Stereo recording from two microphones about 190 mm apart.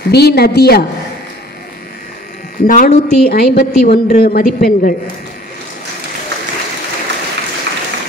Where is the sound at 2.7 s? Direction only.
45° left (ahead or behind).